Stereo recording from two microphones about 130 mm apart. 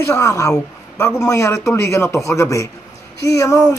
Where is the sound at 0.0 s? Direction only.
20° left (ahead or behind).